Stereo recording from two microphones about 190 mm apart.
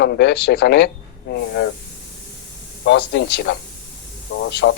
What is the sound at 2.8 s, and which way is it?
Speech, 65° left (ahead or behind).